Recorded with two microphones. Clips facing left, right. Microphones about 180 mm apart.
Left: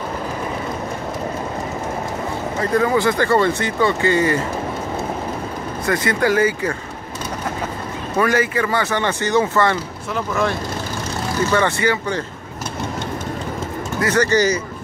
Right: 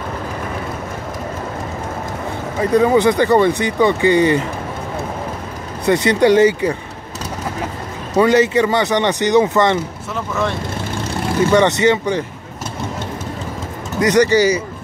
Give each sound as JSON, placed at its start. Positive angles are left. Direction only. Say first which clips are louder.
{"t": 2.6, "sound": "speech", "louder": "right 5 dB", "side_deg": -15}
{"t": 5.9, "sound": "speech", "louder": "right 6 dB", "side_deg": -25}
{"t": 8.2, "sound": "speech", "louder": "right 6 dB", "side_deg": -20}
{"t": 10.1, "sound": "speech", "louder": "even", "side_deg": 0}
{"t": 11.5, "sound": "speech", "louder": "right 6 dB", "side_deg": -20}
{"t": 13.9, "sound": "speech", "louder": "right 4 dB", "side_deg": -15}